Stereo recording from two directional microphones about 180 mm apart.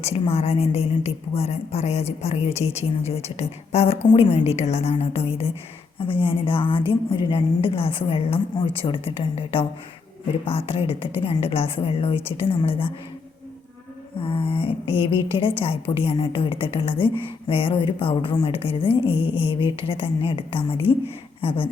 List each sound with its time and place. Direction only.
0.0 s a woman's voice: 35° left (ahead or behind)
14.2 s a woman's voice: 30° left (ahead or behind)